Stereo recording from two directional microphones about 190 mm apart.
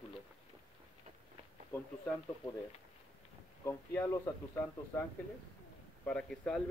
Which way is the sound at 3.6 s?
10° left (ahead or behind).